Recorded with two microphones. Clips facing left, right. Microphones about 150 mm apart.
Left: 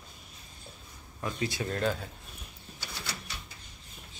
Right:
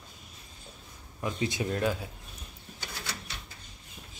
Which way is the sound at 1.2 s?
20° right (ahead or behind).